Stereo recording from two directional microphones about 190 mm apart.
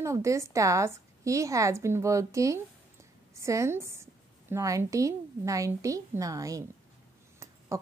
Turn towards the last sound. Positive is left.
turn(degrees=-15)  # may be behind; listen again after turning